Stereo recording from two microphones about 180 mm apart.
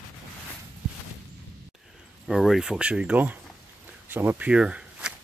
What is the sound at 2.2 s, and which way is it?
Speech, centre (ahead or behind).